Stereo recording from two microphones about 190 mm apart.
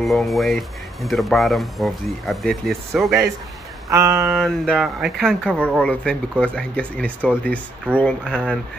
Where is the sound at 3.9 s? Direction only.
15° right (ahead or behind).